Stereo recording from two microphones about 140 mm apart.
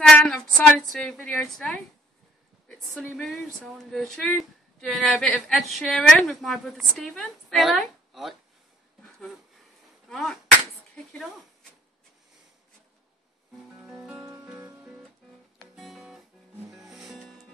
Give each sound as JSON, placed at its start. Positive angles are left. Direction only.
{"t": 0.0, "sound": "a sound", "side_deg": 5}
{"t": 0.9, "sound": "a woman's voice", "side_deg": 5}
{"t": 10.0, "sound": "a sound", "side_deg": 5}
{"t": 11.1, "sound": "speech", "side_deg": 5}
{"t": 13.8, "sound": "music", "side_deg": -5}
{"t": 14.3, "sound": "music", "side_deg": -20}
{"t": 15.7, "sound": "guitar", "side_deg": -5}
{"t": 16.7, "sound": "music", "side_deg": 0}